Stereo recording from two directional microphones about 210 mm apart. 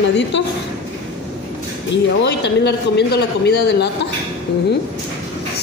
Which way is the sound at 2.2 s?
55° left (ahead or behind).